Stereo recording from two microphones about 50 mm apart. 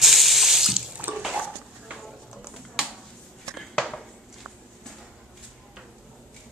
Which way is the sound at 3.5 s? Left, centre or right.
Centre.